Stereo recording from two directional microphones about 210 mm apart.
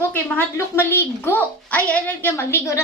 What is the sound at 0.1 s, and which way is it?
A woman's voice, 10° left (ahead or behind).